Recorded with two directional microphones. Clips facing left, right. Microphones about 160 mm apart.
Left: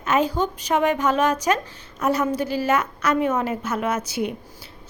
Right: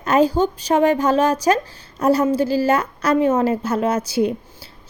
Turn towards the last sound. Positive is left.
turn(degrees=-30)  # may be behind; listen again after turning